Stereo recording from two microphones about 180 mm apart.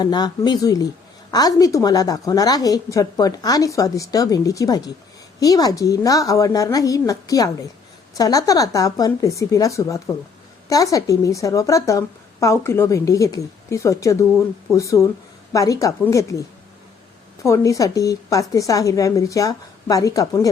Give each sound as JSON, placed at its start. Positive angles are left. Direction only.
{"t": 0.0, "sound": "a woman's voice", "side_deg": 25}
{"t": 17.4, "sound": "a woman's voice", "side_deg": 15}